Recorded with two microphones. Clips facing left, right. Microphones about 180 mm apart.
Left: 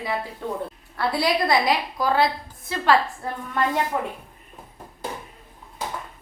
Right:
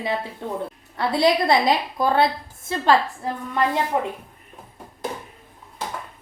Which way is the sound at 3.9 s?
15° right (ahead or behind).